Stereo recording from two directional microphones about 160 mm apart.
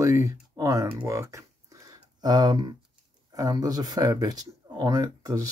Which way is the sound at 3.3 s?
25° right (ahead or behind).